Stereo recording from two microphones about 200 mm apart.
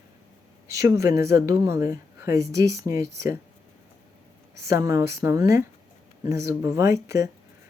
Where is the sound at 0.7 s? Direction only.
15° right (ahead or behind).